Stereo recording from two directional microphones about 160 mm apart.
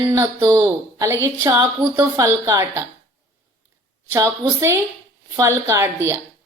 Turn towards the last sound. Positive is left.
turn(degrees=-15)  # may be behind; listen again after turning